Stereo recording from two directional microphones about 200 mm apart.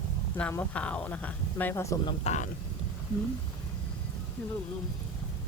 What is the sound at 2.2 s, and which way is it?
Speech, 35° left (ahead or behind).